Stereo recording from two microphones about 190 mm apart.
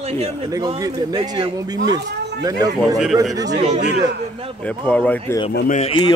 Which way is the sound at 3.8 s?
60° right (ahead or behind).